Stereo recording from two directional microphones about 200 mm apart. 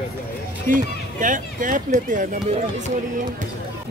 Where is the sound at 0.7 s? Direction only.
40° right (ahead or behind).